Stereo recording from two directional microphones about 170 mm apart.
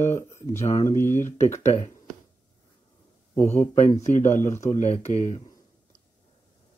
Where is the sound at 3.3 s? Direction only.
15° left (ahead or behind).